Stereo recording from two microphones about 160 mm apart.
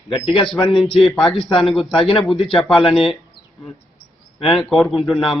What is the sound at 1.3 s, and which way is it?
Speech, 30° left (ahead or behind).